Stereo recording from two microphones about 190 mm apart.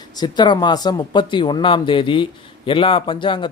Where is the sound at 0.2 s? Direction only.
20° left (ahead or behind).